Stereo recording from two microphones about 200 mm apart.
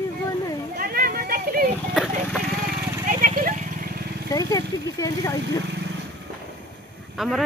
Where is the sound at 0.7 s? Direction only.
45° right (ahead or behind).